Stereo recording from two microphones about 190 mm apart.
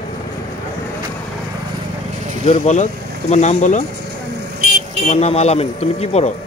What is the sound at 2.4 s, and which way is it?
Speech, 35° left (ahead or behind).